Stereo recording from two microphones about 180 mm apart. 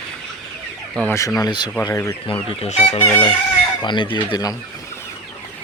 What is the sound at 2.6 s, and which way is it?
Speech, 35° left (ahead or behind).